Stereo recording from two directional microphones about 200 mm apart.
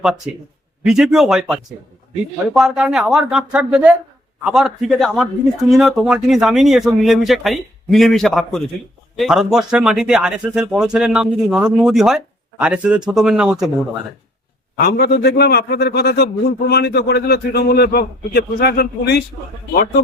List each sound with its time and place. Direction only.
0.3 s speech: 5° right (ahead or behind)
14.8 s a man's voice: 50° left (ahead or behind)